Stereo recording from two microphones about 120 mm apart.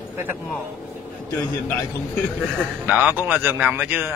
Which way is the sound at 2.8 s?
15° right (ahead or behind).